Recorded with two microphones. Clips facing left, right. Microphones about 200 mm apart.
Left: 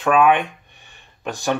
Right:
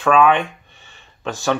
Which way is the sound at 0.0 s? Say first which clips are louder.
Right 1 dB; 20° left (ahead or behind).